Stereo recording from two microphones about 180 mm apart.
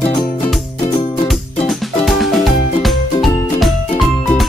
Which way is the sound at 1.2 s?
Centre (ahead or behind).